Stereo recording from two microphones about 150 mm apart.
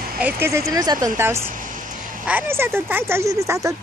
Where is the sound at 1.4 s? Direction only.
60° right (ahead or behind).